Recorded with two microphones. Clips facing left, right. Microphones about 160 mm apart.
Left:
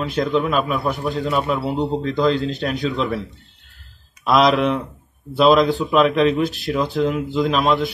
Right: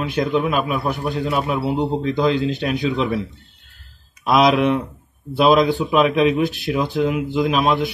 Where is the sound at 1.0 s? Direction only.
20° right (ahead or behind).